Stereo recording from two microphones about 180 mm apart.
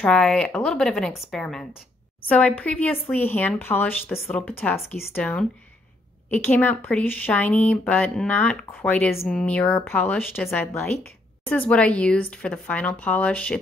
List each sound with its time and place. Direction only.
0.0 s a woman's voice: 5° left (ahead or behind)